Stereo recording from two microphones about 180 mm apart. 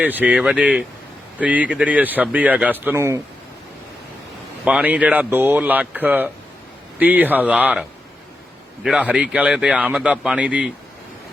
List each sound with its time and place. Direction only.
0.0 s speech: 10° right (ahead or behind)
4.6 s speech: 5° right (ahead or behind)